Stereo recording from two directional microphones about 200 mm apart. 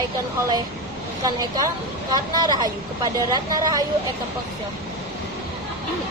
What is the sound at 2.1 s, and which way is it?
Speech, 20° right (ahead or behind).